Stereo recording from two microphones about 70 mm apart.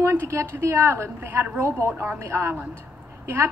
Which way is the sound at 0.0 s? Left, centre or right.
Right.